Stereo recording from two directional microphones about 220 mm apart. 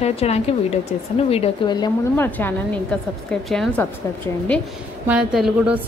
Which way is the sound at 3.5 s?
5° left (ahead or behind).